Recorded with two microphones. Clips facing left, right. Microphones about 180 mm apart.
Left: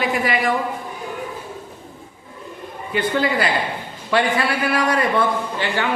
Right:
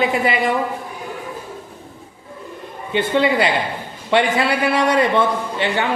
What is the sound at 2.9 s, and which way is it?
A man's voice, 25° right (ahead or behind).